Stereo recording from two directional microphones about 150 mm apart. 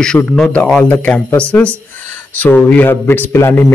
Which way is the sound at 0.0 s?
5° left (ahead or behind).